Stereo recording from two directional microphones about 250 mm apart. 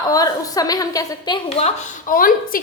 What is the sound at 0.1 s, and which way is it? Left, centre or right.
A woman's voice, centre.